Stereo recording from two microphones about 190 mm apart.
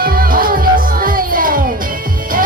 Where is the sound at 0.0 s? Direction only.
50° right (ahead or behind).